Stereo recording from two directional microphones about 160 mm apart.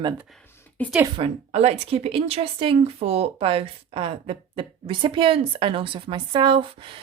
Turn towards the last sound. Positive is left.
turn(degrees=-35)  # may be behind; listen again after turning